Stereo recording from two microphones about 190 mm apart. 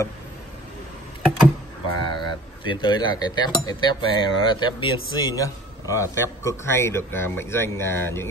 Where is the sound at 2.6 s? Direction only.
25° left (ahead or behind).